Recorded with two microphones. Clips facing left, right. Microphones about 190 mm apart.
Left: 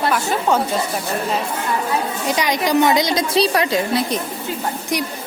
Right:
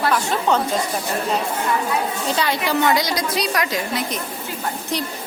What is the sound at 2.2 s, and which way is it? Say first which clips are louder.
A woman's voice: left 4 dB; 15° left (ahead or behind).